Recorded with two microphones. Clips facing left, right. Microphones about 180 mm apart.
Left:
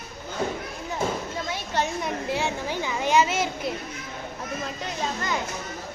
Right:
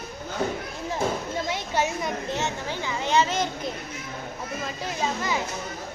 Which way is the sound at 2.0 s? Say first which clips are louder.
Left 1 dB; 10° left (ahead or behind).